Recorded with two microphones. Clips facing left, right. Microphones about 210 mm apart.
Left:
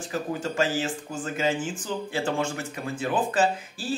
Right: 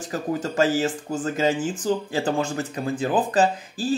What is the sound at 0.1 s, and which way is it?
Speech, 40° right (ahead or behind).